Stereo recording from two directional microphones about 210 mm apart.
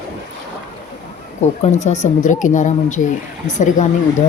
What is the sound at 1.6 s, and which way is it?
A woman's voice, 35° left (ahead or behind).